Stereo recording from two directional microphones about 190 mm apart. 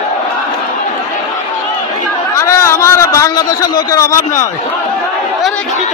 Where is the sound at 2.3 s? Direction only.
15° left (ahead or behind).